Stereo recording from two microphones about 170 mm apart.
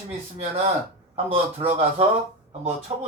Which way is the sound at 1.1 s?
40° right (ahead or behind).